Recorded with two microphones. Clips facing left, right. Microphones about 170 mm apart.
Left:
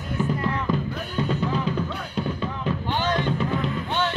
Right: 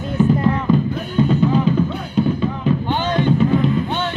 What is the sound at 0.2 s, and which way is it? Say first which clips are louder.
Music: right 9 dB; 30° right (ahead or behind).